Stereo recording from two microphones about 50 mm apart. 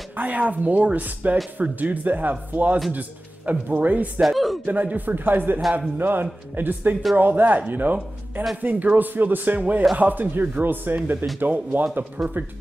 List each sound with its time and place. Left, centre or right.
0.1 s speech: right
4.2 s speech: centre
4.6 s a man's voice: right
12.2 s speech: centre